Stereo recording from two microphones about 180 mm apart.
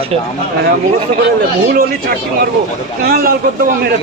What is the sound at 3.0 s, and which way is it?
Speech, 60° right (ahead or behind).